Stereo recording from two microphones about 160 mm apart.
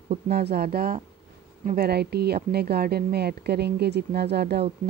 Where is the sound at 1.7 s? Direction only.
85° right.